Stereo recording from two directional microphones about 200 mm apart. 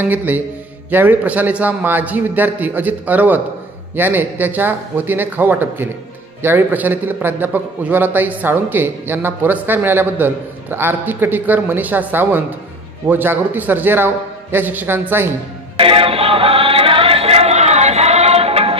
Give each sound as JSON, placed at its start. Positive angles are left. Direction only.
{"t": 0.0, "sound": "a man's voice", "side_deg": -10}
{"t": 15.8, "sound": "music", "side_deg": -25}